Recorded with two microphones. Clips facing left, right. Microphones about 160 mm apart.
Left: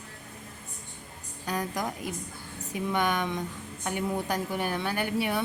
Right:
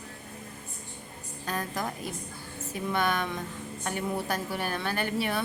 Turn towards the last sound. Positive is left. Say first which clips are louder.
# left 1 dB
turn(degrees=15)  # may be behind; listen again after turning